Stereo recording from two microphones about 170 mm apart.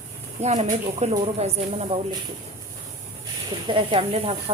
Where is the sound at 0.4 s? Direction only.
40° right (ahead or behind).